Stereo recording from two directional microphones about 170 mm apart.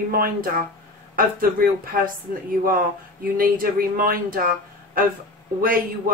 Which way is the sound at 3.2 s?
55° right (ahead or behind).